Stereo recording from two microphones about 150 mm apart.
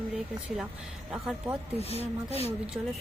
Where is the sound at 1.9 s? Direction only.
45° left (ahead or behind).